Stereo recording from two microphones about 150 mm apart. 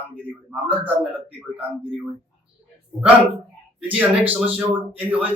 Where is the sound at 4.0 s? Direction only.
10° right (ahead or behind).